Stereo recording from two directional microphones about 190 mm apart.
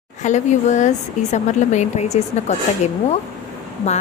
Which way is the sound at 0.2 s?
40° left (ahead or behind).